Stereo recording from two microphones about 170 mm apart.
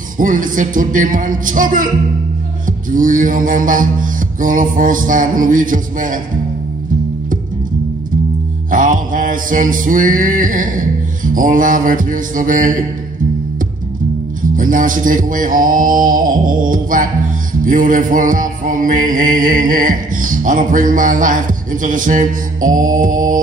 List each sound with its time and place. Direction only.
0.2 s music: 50° right (ahead or behind)
2.9 s music: 50° right (ahead or behind)
8.6 s music: 50° right (ahead or behind)
14.4 s music: 50° right (ahead or behind)